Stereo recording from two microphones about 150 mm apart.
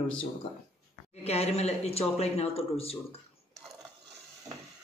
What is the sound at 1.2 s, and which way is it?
Speech, 45° left (ahead or behind).